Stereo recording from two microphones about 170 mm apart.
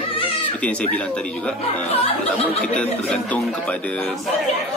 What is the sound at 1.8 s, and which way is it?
Speech, 35° left (ahead or behind).